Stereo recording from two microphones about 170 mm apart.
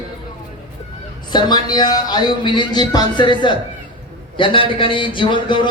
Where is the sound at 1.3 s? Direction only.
25° left (ahead or behind).